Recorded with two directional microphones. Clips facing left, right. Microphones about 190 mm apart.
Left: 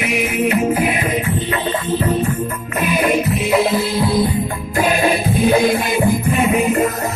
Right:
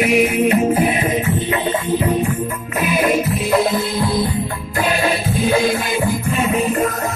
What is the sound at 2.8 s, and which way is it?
Music, centre (ahead or behind).